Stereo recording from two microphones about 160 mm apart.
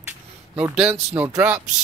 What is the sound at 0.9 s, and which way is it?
Speech, 10° right (ahead or behind).